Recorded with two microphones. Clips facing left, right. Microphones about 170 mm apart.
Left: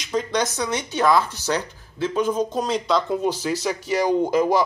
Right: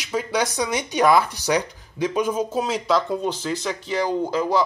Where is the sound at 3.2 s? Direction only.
5° left (ahead or behind).